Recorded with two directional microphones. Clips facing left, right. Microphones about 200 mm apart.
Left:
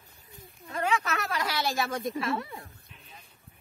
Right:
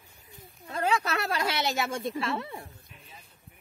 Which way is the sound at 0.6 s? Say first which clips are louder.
Right 1 dB; 30° right (ahead or behind).